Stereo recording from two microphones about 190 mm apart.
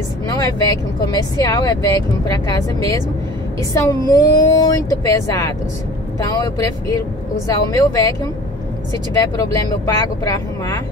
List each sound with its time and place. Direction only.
0.4 s speech: 20° left (ahead or behind)